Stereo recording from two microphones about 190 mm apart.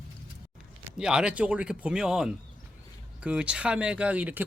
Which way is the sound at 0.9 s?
5° right (ahead or behind).